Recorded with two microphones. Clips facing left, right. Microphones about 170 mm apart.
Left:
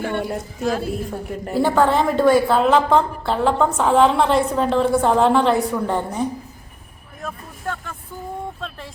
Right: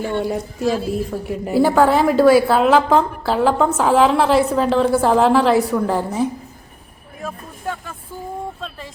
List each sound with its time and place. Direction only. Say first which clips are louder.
0.6 s a woman's voice: right 2 dB; 55° left (ahead or behind)
0.9 s a woman's voice: right 3 dB; 5° right (ahead or behind)
7.2 s vehicle: right 2 dB; 10° right (ahead or behind)